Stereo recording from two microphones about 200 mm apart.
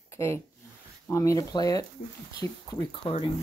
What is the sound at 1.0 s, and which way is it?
Speech, 15° left (ahead or behind).